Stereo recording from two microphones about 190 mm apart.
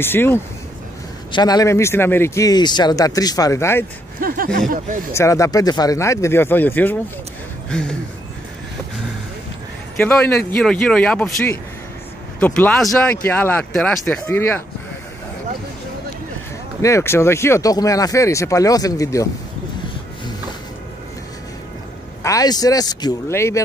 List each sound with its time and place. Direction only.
0.0 s speech: 10° left (ahead or behind)
4.2 s speech: 50° right (ahead or behind)
5.1 s speech: 15° left (ahead or behind)
9.9 s speech: 10° left (ahead or behind)
16.8 s speech: 15° left (ahead or behind)
22.2 s speech: 20° left (ahead or behind)